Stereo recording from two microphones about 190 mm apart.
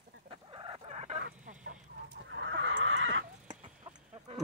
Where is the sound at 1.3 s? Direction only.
50° right (ahead or behind).